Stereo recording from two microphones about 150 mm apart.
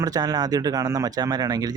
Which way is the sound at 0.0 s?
25° right (ahead or behind).